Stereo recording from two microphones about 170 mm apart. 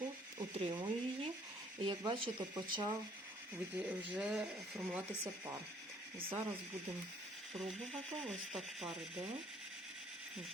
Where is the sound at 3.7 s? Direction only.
10° right (ahead or behind).